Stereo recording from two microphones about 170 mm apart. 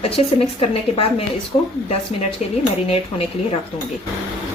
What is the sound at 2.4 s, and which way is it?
Speech, 40° left (ahead or behind).